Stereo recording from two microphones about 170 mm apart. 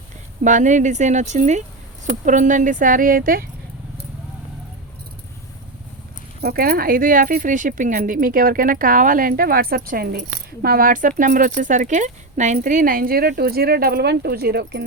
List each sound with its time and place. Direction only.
0.4 s speech: 45° right (ahead or behind)
6.4 s speech: 65° right (ahead or behind)